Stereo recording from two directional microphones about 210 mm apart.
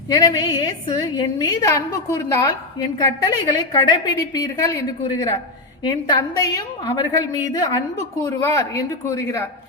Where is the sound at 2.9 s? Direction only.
20° left (ahead or behind).